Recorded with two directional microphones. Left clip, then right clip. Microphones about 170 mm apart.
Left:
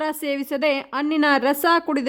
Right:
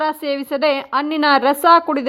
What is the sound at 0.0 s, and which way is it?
A woman's voice, 25° left (ahead or behind).